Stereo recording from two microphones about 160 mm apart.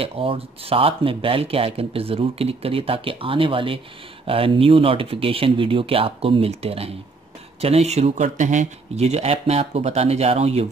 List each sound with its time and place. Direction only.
0.0 s speech: 35° right (ahead or behind)